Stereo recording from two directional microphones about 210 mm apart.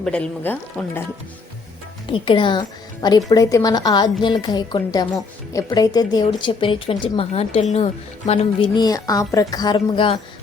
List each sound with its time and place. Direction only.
0.0 s speech: 5° left (ahead or behind)
2.0 s a woman's voice: 25° left (ahead or behind)
8.6 s a woman's voice: 20° left (ahead or behind)